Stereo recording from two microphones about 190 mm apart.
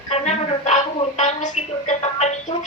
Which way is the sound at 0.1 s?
35° left (ahead or behind).